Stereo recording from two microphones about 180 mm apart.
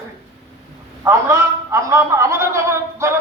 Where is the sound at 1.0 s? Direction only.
15° right (ahead or behind).